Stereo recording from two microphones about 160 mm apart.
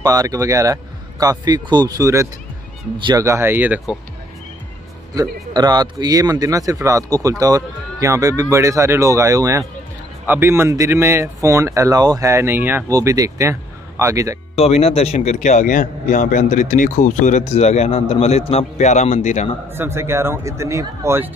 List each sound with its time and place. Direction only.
0.0 s speech: 20° right (ahead or behind)
5.5 s speech: 25° right (ahead or behind)
14.5 s a man's voice: 40° left (ahead or behind)
19.7 s speech: 15° right (ahead or behind)